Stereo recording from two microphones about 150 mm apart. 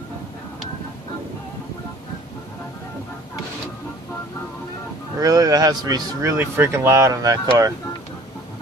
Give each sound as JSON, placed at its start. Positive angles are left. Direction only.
{"t": 5.2, "sound": "speech", "side_deg": -25}